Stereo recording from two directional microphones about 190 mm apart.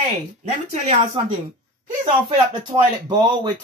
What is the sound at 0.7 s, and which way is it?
Speech, 35° right (ahead or behind).